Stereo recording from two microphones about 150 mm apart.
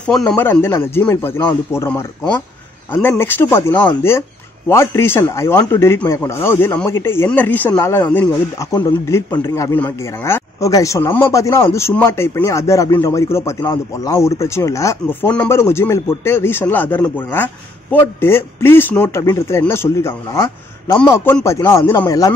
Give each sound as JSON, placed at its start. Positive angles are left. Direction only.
{"t": 0.0, "sound": "speech", "side_deg": 5}
{"t": 0.4, "sound": "speech", "side_deg": 15}
{"t": 8.7, "sound": "a man's voice", "side_deg": 25}